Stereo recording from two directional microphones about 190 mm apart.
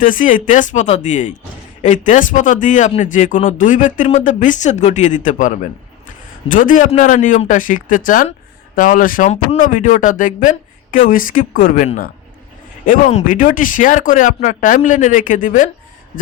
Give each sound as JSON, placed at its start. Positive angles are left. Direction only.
{"t": 0.0, "sound": "speech", "side_deg": 45}